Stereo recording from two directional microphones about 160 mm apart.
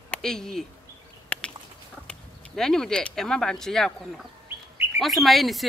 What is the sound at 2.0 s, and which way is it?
Speech, 5° left (ahead or behind).